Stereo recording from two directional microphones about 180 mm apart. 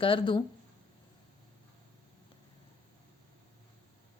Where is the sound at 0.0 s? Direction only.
30° left (ahead or behind).